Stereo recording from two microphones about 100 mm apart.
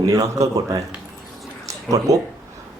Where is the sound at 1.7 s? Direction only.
35° right (ahead or behind).